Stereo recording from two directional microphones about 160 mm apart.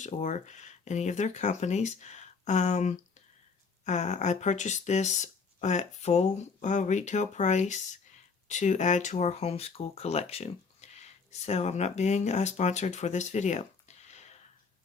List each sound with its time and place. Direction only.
0.0 s speech: 50° left (ahead or behind)